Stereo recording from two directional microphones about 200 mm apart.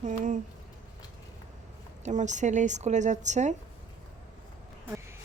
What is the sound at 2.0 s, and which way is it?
A woman's voice, 35° right (ahead or behind).